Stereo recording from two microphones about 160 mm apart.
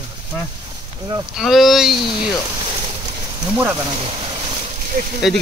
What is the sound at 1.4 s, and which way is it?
Speech, centre (ahead or behind).